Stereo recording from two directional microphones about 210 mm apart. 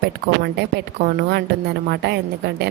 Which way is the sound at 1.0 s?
50° right (ahead or behind).